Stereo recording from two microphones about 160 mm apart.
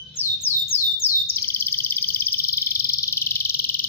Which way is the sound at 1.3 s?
15° left (ahead or behind).